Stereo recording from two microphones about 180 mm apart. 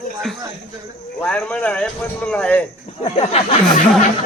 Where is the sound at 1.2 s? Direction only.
10° left (ahead or behind).